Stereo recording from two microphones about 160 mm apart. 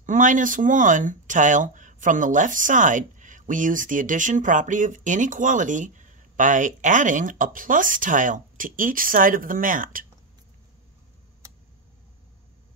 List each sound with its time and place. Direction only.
0.0 s speech: 55° right (ahead or behind)